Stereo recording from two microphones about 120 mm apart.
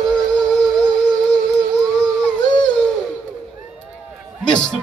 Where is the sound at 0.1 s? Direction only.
5° left (ahead or behind).